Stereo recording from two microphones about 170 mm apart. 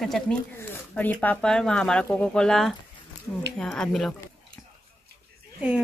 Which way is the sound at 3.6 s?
5° left (ahead or behind).